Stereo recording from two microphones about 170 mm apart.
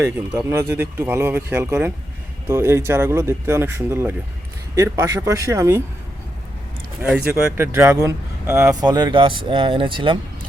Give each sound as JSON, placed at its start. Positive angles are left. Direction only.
{"t": 0.0, "sound": "speech", "side_deg": -20}
{"t": 7.0, "sound": "speech", "side_deg": -10}